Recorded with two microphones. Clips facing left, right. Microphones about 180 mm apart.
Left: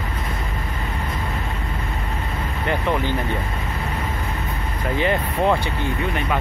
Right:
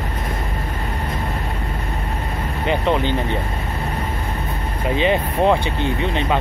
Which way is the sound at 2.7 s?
20° right (ahead or behind).